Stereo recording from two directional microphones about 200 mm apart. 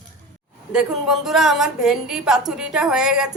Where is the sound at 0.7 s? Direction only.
5° right (ahead or behind).